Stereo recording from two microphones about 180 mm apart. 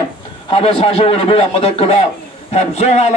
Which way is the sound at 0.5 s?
30° left (ahead or behind).